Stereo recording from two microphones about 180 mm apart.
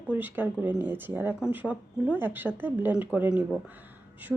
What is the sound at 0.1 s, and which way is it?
A woman's voice, 10° right (ahead or behind).